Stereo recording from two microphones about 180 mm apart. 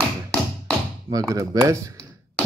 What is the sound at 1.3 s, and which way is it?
Speech, 20° right (ahead or behind).